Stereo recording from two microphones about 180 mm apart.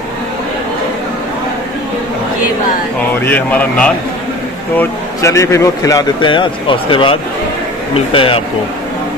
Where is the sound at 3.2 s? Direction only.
10° left (ahead or behind); by 8.4 s 30° left (ahead or behind).